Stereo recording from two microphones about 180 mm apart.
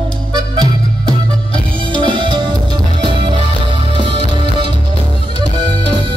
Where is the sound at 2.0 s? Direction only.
25° right (ahead or behind).